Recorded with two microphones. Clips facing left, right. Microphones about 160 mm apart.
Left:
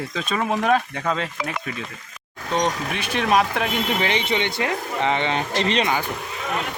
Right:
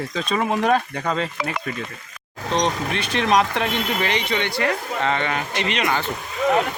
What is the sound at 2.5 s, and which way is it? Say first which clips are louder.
Speech: right 1 dB; 5° left (ahead or behind).